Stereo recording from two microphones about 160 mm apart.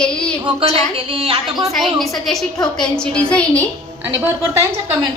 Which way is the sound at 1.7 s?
Centre (ahead or behind).